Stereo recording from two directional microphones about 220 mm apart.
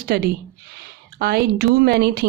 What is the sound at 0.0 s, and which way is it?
Speech, 45° right (ahead or behind).